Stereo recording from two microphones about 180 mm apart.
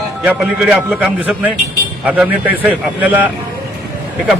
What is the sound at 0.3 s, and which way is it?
A man's voice, 5° right (ahead or behind).